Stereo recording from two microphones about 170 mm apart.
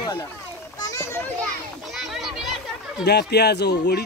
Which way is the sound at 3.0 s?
75° left (ahead or behind).